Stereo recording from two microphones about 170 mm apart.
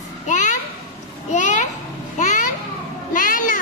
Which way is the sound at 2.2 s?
50° left (ahead or behind).